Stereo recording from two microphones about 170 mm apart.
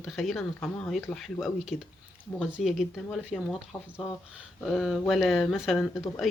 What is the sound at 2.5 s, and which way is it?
Speech, centre (ahead or behind).